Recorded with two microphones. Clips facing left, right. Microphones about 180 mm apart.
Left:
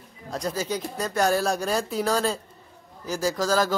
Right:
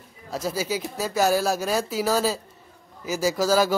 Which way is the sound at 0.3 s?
5° right (ahead or behind).